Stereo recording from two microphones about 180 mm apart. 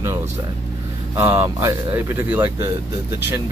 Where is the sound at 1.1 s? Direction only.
15° right (ahead or behind).